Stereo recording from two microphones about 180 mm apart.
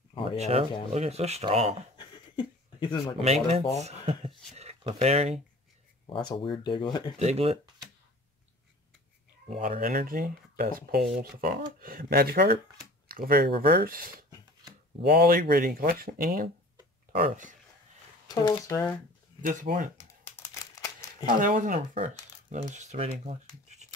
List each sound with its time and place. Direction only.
0.4 s speech: 35° right (ahead or behind)
2.0 s a sound: 25° left (ahead or behind)
3.2 s speech: 35° right (ahead or behind)
6.0 s speech: 25° left (ahead or behind)
7.2 s speech: 35° right (ahead or behind)
9.5 s speech: 40° right (ahead or behind)
9.8 s speech: 55° right (ahead or behind)
18.3 s speech: 25° left (ahead or behind)
19.4 s speech: 45° right (ahead or behind)
20.0 s crumpling: 15° left (ahead or behind)
21.4 s speech: 45° right (ahead or behind)